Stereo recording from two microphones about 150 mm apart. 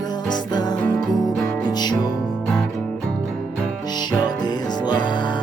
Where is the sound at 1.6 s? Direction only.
30° left (ahead or behind).